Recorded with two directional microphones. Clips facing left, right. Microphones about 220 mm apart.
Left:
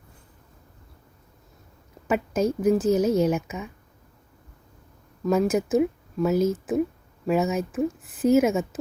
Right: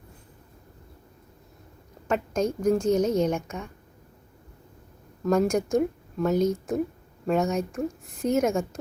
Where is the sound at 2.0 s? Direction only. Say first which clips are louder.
Left 2 dB; 5° left (ahead or behind).